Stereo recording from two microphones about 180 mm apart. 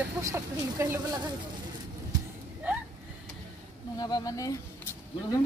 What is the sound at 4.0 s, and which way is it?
Speech, 20° left (ahead or behind).